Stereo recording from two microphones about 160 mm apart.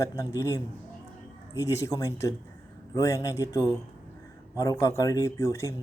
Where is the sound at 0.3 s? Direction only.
20° left (ahead or behind).